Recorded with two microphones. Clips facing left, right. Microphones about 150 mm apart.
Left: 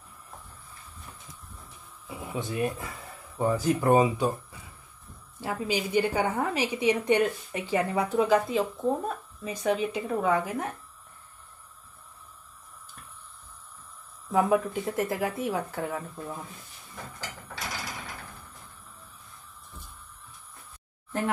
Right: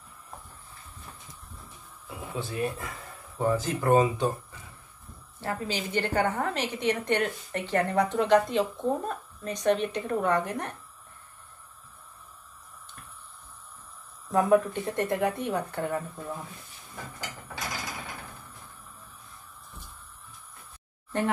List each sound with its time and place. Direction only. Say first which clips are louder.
2.0 s a sound: left 2 dB; 15° left (ahead or behind)
2.8 s a woman's voice: even; 5° left (ahead or behind)
14.3 s speech: right 2 dB; 5° left (ahead or behind)